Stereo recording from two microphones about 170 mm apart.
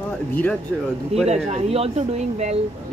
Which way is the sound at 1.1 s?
40° right (ahead or behind).